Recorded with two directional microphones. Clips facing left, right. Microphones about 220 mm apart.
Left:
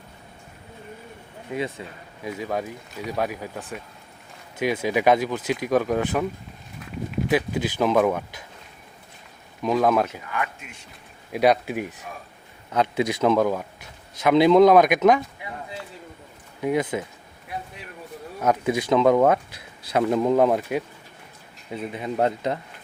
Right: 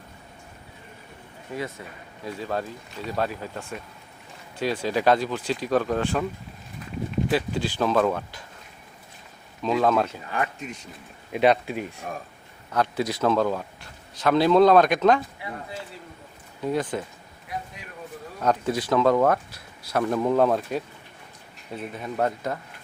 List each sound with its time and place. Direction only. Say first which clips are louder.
1.5 s speech: left 4 dB; 15° left (ahead or behind)
9.6 s speech: left 1 dB; 15° left (ahead or behind)
10.2 s speech: right 2 dB; 35° right (ahead or behind)
11.3 s speech: left 1 dB; 10° left (ahead or behind)
16.6 s speech: left 3 dB; 15° left (ahead or behind)
18.3 s speech: left 2 dB; 10° left (ahead or behind)
21.9 s speech: left 3 dB; 20° left (ahead or behind)